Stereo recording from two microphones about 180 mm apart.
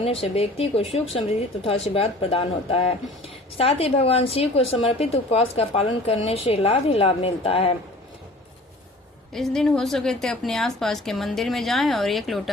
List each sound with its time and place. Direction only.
0.0 s a woman's voice: 35° left (ahead or behind)
9.3 s a woman's voice: 5° left (ahead or behind)